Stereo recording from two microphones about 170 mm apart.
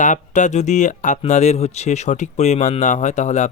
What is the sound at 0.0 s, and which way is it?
Speech, 45° left (ahead or behind).